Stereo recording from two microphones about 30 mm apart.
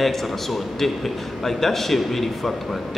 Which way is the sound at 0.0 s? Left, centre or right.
Centre.